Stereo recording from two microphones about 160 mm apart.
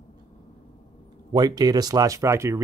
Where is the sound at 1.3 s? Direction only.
25° right (ahead or behind).